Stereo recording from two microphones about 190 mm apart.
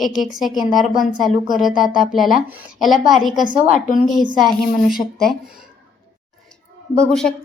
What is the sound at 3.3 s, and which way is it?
Speech, 25° right (ahead or behind).